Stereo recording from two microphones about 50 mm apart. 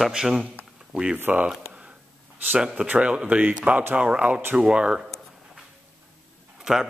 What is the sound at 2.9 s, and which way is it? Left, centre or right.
Speech, right.